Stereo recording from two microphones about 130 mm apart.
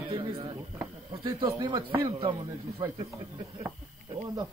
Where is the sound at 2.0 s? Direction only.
40° right (ahead or behind).